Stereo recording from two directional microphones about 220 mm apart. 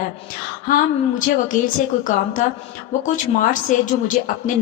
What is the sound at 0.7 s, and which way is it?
A woman's voice, 40° left (ahead or behind).